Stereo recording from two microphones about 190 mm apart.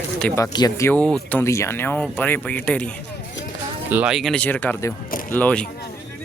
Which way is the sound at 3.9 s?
5° right (ahead or behind).